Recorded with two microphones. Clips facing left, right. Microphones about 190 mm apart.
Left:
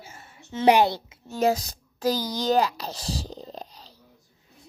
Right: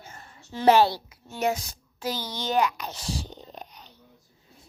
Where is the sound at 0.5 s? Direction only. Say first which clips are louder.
Even; 20° left (ahead or behind).